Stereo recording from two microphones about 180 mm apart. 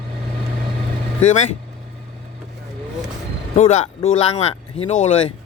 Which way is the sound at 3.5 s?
40° left (ahead or behind).